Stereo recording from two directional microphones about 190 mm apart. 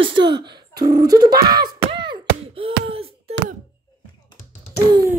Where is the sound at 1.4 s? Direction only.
20° right (ahead or behind).